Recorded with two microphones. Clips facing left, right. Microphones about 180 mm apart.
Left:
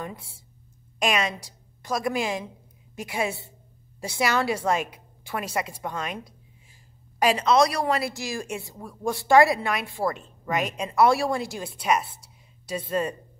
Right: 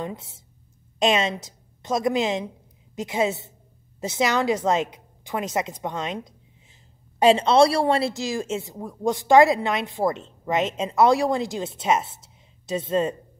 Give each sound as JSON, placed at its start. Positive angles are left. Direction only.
{"t": 0.0, "sound": "a woman's voice", "side_deg": -20}